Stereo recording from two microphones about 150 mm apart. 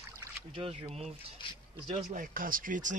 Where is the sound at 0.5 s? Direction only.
35° right (ahead or behind).